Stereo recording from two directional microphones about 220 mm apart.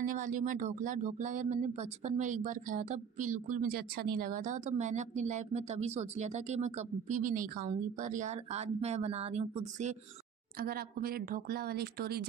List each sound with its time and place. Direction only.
0.0 s speech: 35° right (ahead or behind)
10.6 s speech: 45° right (ahead or behind)